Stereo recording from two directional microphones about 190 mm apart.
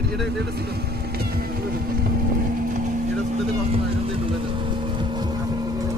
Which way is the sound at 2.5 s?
45° right (ahead or behind).